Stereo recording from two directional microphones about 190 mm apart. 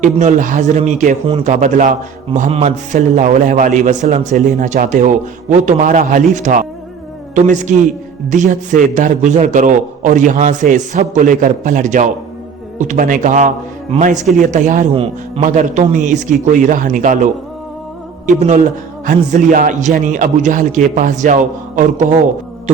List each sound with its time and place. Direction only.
0.0 s a man's voice: 40° right (ahead or behind)
18.4 s a man's voice: 40° right (ahead or behind)